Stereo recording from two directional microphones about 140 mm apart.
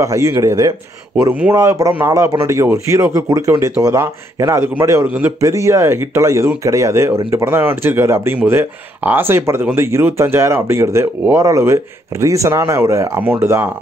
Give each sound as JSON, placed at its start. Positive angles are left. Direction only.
{"t": 0.0, "sound": "speech", "side_deg": -20}